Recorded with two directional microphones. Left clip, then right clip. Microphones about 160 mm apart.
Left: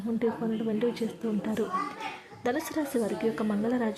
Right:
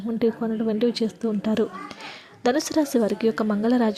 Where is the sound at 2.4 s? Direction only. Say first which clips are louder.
Right 8 dB; 30° right (ahead or behind).